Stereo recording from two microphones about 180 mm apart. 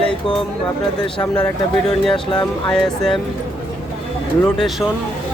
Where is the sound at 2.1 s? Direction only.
25° left (ahead or behind).